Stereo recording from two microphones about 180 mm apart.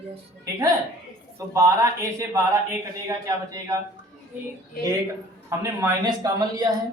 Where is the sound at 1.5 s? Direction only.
15° right (ahead or behind).